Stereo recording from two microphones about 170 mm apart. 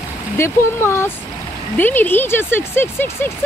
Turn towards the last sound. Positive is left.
turn(degrees=15)  # may be behind; listen again after turning